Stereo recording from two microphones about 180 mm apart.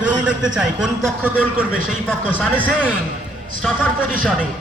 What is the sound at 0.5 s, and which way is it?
Speech, centre (ahead or behind).